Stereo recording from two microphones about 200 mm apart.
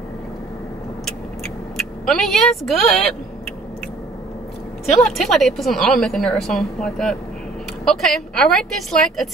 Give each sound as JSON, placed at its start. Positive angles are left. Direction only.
{"t": 1.8, "sound": "speech", "side_deg": 5}
{"t": 4.8, "sound": "a woman's voice", "side_deg": 0}